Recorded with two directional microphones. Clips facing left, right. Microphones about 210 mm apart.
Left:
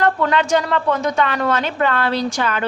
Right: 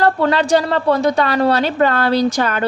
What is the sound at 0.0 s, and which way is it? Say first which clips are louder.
A woman's voice: right 2 dB; 35° right (ahead or behind).